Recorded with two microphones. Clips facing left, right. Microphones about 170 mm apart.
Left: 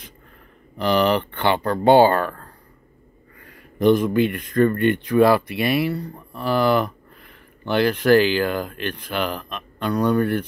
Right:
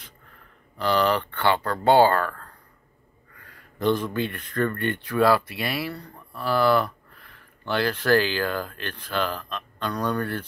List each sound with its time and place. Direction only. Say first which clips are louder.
0.7 s speech: left 4 dB; 15° left (ahead or behind)